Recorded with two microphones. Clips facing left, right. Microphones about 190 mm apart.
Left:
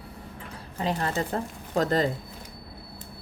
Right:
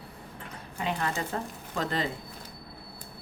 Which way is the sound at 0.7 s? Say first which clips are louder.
Left 3 dB; 35° left (ahead or behind).